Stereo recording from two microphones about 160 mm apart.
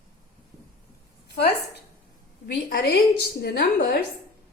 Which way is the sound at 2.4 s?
80° left.